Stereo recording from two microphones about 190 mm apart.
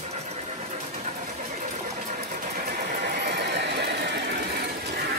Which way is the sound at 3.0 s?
60° right (ahead or behind).